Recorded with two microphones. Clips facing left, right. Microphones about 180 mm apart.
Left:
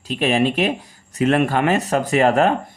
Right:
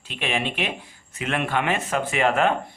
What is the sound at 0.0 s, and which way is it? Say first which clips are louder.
Speech: left 9 dB; 40° left (ahead or behind).